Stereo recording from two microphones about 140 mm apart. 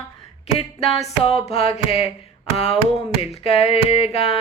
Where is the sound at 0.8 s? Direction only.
50° left (ahead or behind).